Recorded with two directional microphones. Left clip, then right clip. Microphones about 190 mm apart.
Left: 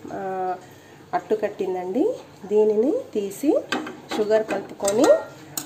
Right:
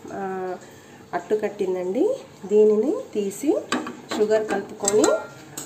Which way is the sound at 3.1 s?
10° left (ahead or behind).